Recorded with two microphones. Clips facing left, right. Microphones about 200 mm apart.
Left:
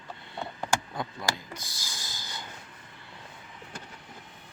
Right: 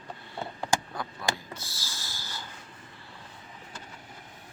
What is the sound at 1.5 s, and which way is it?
Snort, 15° left (ahead or behind).